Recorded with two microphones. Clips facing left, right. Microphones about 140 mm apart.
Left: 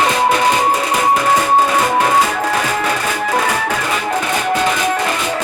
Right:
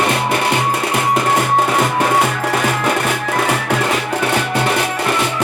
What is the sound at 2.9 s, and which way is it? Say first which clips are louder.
Music: even; 65° right (ahead or behind).